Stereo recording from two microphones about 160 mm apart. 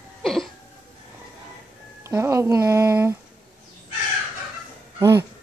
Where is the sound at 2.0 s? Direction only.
15° right (ahead or behind).